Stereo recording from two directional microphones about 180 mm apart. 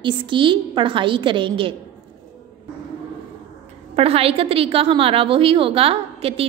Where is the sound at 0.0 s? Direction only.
25° right (ahead or behind).